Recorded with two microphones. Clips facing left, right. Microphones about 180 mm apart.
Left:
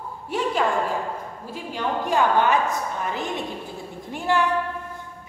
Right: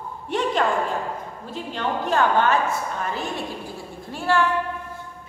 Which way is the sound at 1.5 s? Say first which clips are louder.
Even; 10° left (ahead or behind).